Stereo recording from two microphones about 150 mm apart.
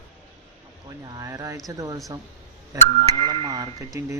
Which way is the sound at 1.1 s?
20° right (ahead or behind).